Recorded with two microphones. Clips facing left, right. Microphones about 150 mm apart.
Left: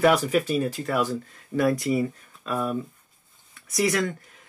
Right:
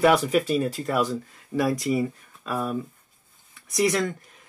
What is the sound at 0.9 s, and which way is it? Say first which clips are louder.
Speech: right 1 dB; centre (ahead or behind).